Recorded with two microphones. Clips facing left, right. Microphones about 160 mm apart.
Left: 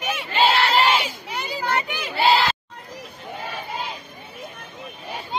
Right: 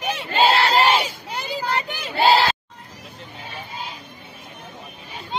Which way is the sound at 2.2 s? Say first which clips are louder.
Right 2 dB; 35° right (ahead or behind).